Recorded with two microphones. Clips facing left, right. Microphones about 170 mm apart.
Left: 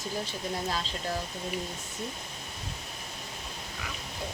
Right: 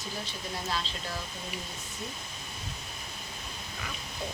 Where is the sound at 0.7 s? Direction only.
45° left (ahead or behind).